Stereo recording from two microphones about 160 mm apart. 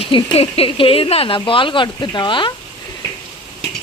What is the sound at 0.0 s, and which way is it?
Speech, 35° left (ahead or behind).